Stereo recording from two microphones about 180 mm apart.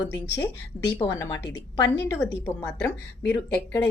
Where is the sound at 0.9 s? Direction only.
15° left (ahead or behind).